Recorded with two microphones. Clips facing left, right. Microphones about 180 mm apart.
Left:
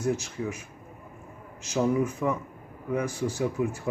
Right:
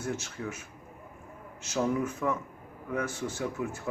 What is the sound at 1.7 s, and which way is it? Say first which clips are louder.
Speech: left 4 dB; 10° left (ahead or behind).